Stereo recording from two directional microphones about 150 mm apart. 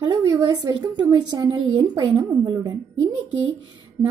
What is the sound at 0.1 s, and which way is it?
A woman's voice, 30° right (ahead or behind).